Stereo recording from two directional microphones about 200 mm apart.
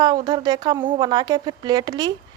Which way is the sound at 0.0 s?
20° right (ahead or behind).